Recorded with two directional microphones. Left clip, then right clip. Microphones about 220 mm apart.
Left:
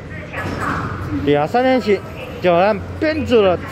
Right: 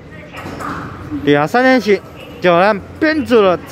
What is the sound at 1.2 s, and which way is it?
Speech, 20° right (ahead or behind).